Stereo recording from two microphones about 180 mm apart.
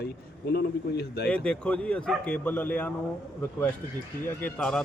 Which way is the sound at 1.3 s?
5° left (ahead or behind).